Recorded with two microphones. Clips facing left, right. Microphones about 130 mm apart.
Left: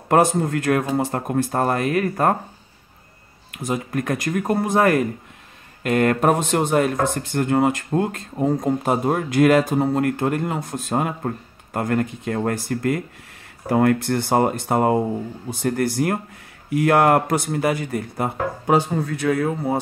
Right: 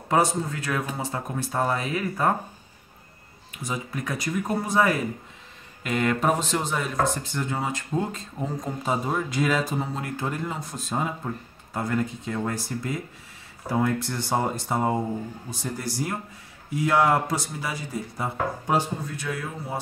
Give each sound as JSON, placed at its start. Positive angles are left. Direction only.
{"t": 0.1, "sound": "speech", "side_deg": 55}
{"t": 3.5, "sound": "speech", "side_deg": 55}